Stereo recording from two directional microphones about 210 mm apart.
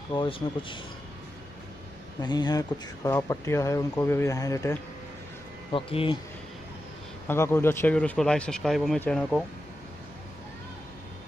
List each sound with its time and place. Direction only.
0.1 s speech: 25° left (ahead or behind)
2.2 s speech: 20° left (ahead or behind)
5.7 s speech: 25° left (ahead or behind)
7.2 s speech: 10° left (ahead or behind)